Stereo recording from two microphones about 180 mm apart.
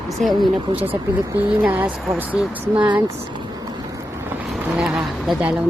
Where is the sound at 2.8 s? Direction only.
25° right (ahead or behind).